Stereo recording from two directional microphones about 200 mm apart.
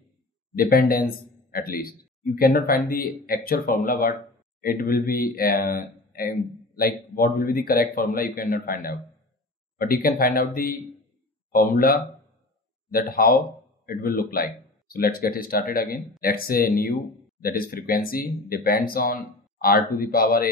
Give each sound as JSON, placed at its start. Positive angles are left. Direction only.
{"t": 0.6, "sound": "a man's voice", "side_deg": 45}
{"t": 13.1, "sound": "a man's voice", "side_deg": 50}